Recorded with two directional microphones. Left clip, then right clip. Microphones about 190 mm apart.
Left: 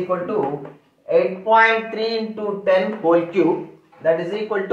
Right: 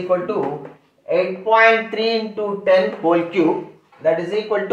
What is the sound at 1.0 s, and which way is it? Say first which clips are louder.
A man's voice: left 1 dB; 20° right (ahead or behind).